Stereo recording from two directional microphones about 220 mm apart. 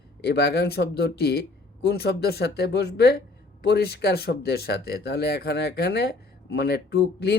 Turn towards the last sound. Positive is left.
turn(degrees=50)  # may be behind; listen again after turning